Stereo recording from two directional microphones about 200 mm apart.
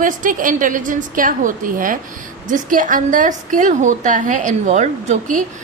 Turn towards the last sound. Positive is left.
turn(degrees=-35)  # may be behind; listen again after turning